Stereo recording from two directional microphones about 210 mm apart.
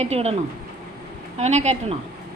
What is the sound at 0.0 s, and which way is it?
Speech, 30° right (ahead or behind).